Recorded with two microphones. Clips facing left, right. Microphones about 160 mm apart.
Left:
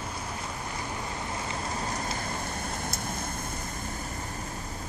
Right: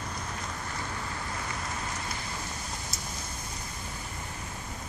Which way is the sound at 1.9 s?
50° left (ahead or behind).